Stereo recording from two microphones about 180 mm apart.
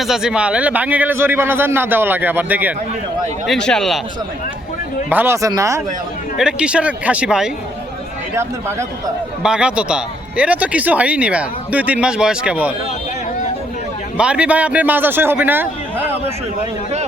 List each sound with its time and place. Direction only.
0.0 s speech: centre (ahead or behind)
3.4 s speech: 5° left (ahead or behind)
5.0 s speech: 10° right (ahead or behind)
6.3 s speech: 5° right (ahead or behind)
8.4 s speech: 15° right (ahead or behind)
14.2 s speech: 5° right (ahead or behind)